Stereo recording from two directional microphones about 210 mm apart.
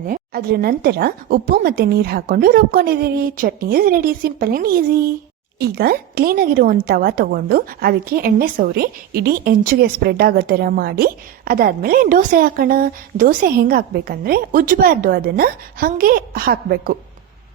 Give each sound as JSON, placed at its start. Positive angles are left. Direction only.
{"t": 0.0, "sound": "a woman's voice", "side_deg": -45}